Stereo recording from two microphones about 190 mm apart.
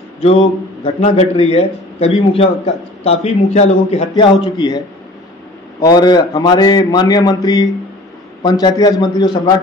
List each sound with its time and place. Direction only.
1.0 s a man's voice: 35° left (ahead or behind)
4.1 s a man's voice: 20° left (ahead or behind)